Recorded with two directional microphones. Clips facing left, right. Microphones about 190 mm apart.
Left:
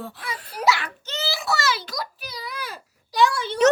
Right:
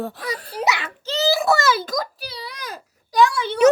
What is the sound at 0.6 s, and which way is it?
Speech, 20° right (ahead or behind).